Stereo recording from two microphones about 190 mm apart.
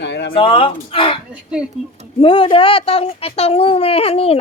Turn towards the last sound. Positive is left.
turn(degrees=30)  # may be behind; listen again after turning